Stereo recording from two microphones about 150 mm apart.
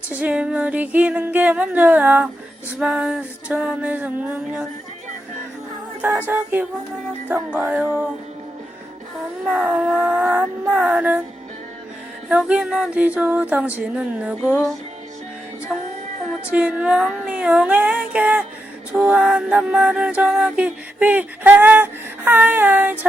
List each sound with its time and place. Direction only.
0.1 s music: 10° right (ahead or behind)
6.0 s music: 10° right (ahead or behind)
9.5 s music: 5° right (ahead or behind)
12.3 s music: 5° right (ahead or behind)
15.7 s music: 5° right (ahead or behind)